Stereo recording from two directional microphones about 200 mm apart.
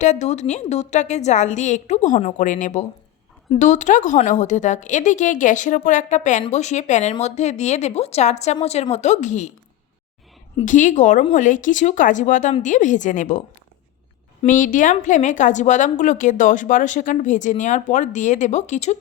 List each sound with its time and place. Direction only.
0.0 s a woman's voice: 35° left (ahead or behind)
10.7 s a woman's voice: 40° left (ahead or behind)
14.4 s a woman's voice: 40° left (ahead or behind)